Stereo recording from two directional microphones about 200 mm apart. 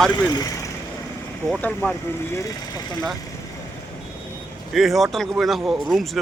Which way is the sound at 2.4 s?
20° left (ahead or behind).